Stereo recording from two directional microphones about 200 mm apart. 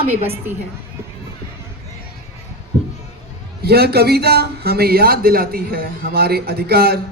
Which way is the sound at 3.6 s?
50° right (ahead or behind).